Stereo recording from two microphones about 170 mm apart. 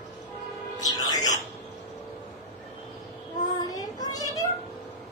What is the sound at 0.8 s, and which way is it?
Music, 20° left (ahead or behind).